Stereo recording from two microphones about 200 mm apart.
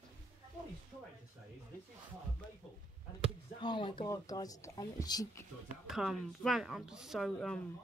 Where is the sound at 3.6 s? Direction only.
25° left (ahead or behind).